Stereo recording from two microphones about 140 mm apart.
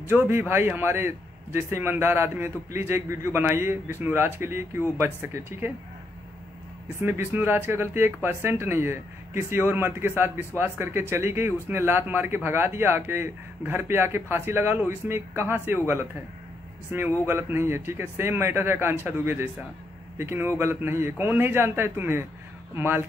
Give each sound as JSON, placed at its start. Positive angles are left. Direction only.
{"t": 0.1, "sound": "a man's voice", "side_deg": -15}
{"t": 7.0, "sound": "a man's voice", "side_deg": -15}
{"t": 16.9, "sound": "a man's voice", "side_deg": -15}